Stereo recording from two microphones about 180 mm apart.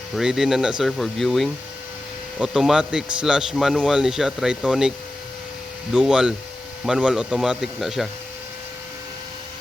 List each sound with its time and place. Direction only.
0.1 s a man's voice: centre (ahead or behind)
5.9 s a man's voice: 5° right (ahead or behind)